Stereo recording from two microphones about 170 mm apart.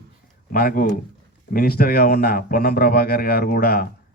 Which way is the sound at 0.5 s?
60° left (ahead or behind).